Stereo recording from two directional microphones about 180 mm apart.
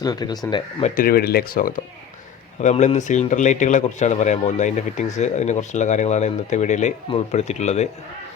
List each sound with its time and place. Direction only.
0.0 s speech: 20° left (ahead or behind)
0.8 s speech: 40° left (ahead or behind)
1.0 s speech: 55° left (ahead or behind)
2.6 s speech: 40° left (ahead or behind)